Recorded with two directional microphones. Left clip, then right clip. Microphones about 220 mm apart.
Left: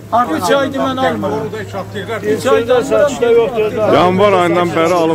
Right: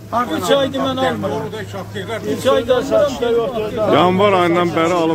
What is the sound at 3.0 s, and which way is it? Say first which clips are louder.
Speech: left 6 dB; 25° left (ahead or behind).